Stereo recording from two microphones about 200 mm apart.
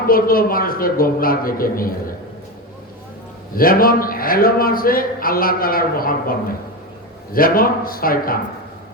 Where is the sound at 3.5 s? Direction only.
45° left (ahead or behind).